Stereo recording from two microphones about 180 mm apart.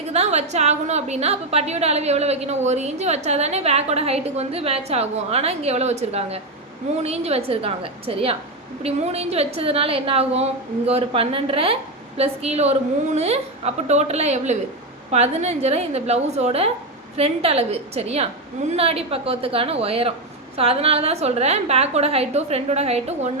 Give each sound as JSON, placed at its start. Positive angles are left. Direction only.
{"t": 0.1, "sound": "a woman's voice", "side_deg": -35}